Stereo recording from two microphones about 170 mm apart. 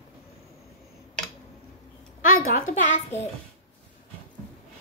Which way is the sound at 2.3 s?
55° left (ahead or behind).